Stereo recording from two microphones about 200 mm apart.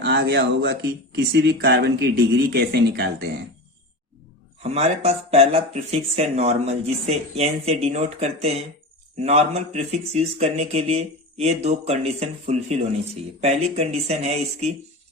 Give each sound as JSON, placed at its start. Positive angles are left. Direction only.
{"t": 0.0, "sound": "speech", "side_deg": -55}
{"t": 4.6, "sound": "speech", "side_deg": -30}